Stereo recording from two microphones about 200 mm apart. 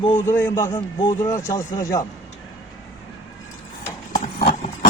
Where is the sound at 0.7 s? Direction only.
25° left (ahead or behind).